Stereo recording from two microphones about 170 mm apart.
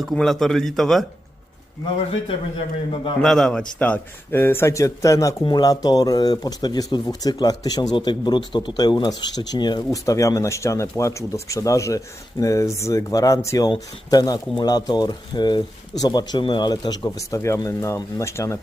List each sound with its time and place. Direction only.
0.0 s a man's voice: 5° left (ahead or behind)
2.2 s a man's voice: 30° left (ahead or behind)
3.2 s speech: 5° left (ahead or behind)